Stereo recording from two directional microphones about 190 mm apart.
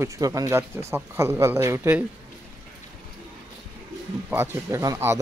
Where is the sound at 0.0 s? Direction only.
15° right (ahead or behind).